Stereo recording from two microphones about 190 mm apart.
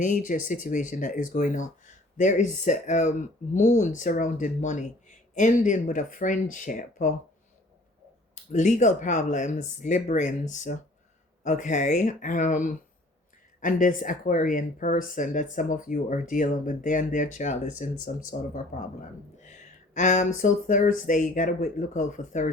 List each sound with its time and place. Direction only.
0.0 s speech: 45° left (ahead or behind)
8.5 s speech: 40° left (ahead or behind)